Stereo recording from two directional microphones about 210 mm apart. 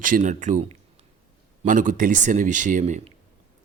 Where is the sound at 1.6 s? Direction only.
40° right (ahead or behind).